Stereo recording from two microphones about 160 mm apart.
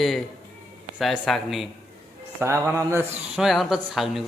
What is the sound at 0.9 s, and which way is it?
Speech, centre (ahead or behind).